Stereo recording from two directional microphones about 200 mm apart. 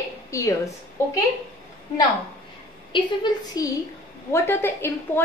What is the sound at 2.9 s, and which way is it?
A woman's voice, 25° left (ahead or behind).